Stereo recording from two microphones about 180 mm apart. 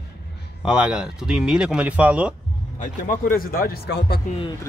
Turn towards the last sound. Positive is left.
turn(degrees=65)  # may be behind; listen again after turning